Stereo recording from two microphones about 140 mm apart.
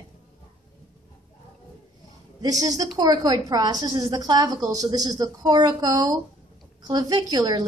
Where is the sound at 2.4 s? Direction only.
25° right (ahead or behind).